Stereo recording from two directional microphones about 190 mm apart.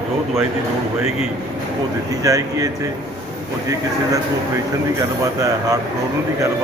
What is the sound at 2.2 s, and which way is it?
Speech, 20° right (ahead or behind).